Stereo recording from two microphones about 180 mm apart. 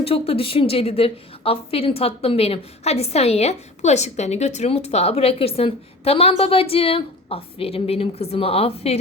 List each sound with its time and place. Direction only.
0.0 s a woman's voice: 30° left (ahead or behind)